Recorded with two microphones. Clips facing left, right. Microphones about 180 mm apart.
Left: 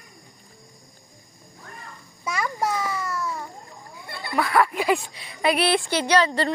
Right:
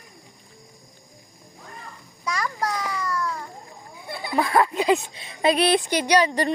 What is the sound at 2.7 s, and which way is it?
Children playing, 25° left (ahead or behind).